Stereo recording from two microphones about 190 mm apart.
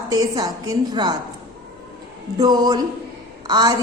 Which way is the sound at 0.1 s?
20° right (ahead or behind).